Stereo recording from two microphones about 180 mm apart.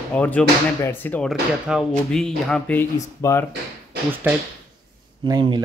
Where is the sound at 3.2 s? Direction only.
15° left (ahead or behind).